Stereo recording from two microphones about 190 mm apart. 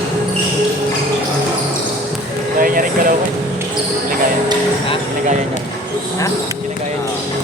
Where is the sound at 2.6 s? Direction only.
45° right (ahead or behind).